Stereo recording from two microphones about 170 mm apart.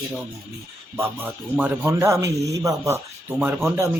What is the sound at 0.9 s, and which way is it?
Speech, 10° right (ahead or behind).